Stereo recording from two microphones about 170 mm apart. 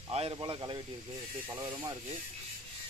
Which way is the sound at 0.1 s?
35° right (ahead or behind).